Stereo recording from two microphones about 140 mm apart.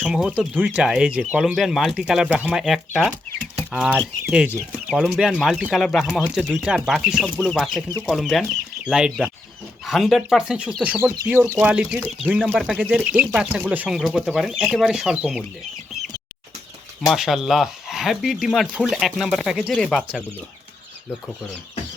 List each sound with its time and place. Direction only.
0.0 s speech: 5° right (ahead or behind)
17.1 s speech: centre (ahead or behind)